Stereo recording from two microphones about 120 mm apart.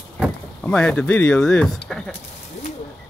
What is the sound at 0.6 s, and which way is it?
Speech, 10° left (ahead or behind).